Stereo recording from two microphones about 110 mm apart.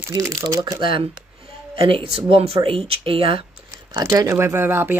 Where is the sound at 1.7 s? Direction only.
55° right (ahead or behind).